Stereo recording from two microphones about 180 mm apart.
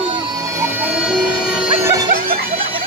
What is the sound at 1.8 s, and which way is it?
Music, 20° right (ahead or behind).